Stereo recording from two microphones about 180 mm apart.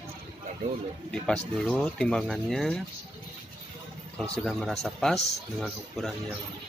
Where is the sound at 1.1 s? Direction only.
5° left (ahead or behind).